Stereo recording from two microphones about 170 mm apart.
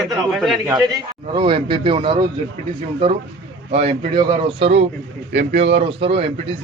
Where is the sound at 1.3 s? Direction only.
30° right (ahead or behind).